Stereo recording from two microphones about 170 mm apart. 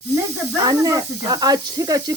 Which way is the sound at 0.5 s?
20° right (ahead or behind).